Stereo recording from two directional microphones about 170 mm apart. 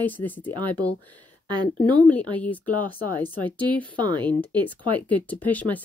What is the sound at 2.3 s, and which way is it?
Speech, 10° left (ahead or behind).